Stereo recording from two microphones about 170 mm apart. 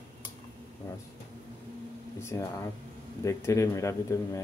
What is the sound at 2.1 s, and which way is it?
Speech, 15° left (ahead or behind).